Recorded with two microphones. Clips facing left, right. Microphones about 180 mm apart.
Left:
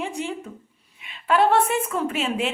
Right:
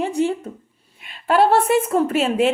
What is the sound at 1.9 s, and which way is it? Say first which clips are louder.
Speech: right 7 dB; 45° right (ahead or behind).